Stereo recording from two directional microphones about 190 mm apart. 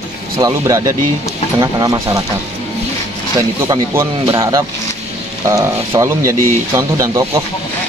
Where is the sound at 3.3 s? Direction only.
15° right (ahead or behind).